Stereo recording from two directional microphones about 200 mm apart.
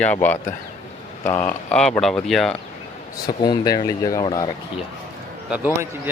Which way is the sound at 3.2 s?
20° left (ahead or behind).